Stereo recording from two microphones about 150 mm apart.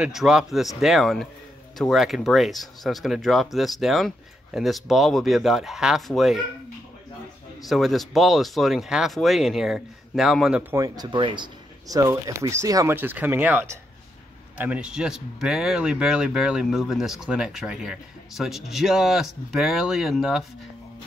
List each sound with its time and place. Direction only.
0.0 s speech: 5° right (ahead or behind)
7.6 s speech: centre (ahead or behind)
10.7 s speech: 25° right (ahead or behind); by 20.4 s centre (ahead or behind)